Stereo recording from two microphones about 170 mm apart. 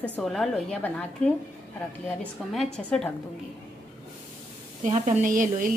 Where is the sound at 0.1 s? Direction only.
Centre (ahead or behind).